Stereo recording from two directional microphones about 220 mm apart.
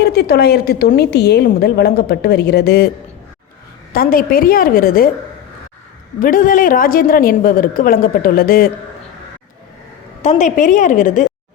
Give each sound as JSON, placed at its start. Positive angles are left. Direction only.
{"t": 0.0, "sound": "a woman's voice", "side_deg": 45}
{"t": 3.9, "sound": "a woman's voice", "side_deg": 40}
{"t": 6.1, "sound": "a woman's voice", "side_deg": 40}
{"t": 10.2, "sound": "a woman's voice", "side_deg": 35}